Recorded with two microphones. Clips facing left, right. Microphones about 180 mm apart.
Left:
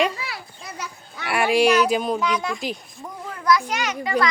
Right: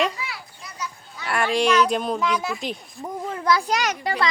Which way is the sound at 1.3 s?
10° left (ahead or behind).